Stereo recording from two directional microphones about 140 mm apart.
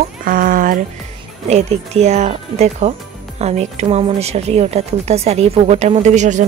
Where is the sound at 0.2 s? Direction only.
80° right.